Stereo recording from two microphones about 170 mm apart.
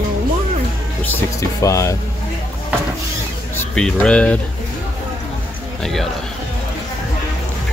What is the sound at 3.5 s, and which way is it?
Speech, 5° left (ahead or behind).